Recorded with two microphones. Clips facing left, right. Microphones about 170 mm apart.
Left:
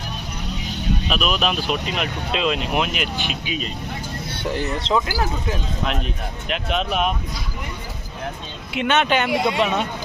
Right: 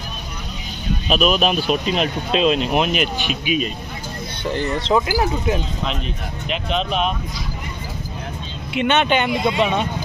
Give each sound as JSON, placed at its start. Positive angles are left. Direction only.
{"t": 1.0, "sound": "speech", "side_deg": -20}
{"t": 4.6, "sound": "speech", "side_deg": 0}
{"t": 6.5, "sound": "speech", "side_deg": 5}
{"t": 8.7, "sound": "speech", "side_deg": 0}